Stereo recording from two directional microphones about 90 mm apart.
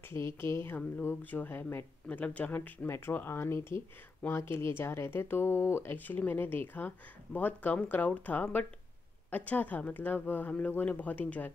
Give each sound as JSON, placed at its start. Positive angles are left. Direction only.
{"t": 0.1, "sound": "speech", "side_deg": 30}